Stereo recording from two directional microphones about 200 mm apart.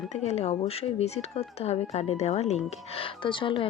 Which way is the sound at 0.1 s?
35° left (ahead or behind).